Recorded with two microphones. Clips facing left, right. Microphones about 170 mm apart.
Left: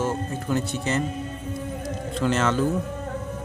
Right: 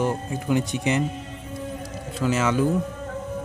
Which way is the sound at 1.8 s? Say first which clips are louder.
Left 2 dB; 10° right (ahead or behind).